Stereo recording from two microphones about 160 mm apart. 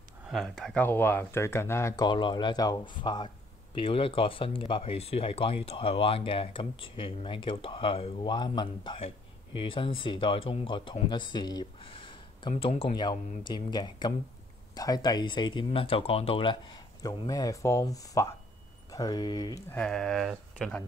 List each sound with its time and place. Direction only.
0.3 s speech: 5° left (ahead or behind)
2.0 s speech: 30° left (ahead or behind)
19.7 s speech: 5° left (ahead or behind)